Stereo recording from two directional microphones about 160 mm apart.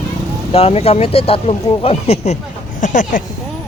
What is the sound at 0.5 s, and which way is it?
Speech, 40° left (ahead or behind).